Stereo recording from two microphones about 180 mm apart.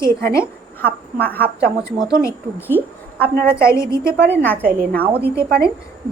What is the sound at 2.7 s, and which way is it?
A woman's voice, 10° left (ahead or behind).